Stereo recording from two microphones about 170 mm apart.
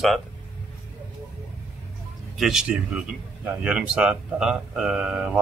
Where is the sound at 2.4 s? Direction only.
5° right (ahead or behind).